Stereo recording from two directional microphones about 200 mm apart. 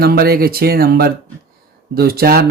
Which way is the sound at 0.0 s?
50° right (ahead or behind).